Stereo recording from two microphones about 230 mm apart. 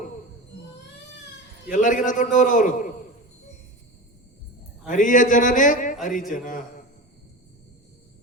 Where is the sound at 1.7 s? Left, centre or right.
Left.